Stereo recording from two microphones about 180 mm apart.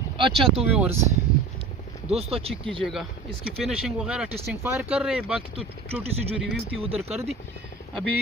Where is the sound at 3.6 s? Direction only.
5° right (ahead or behind).